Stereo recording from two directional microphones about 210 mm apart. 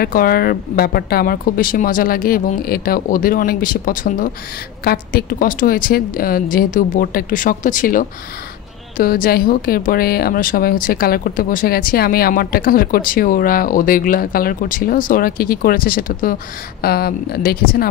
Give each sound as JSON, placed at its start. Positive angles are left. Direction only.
{"t": 0.0, "sound": "a woman's voice", "side_deg": 45}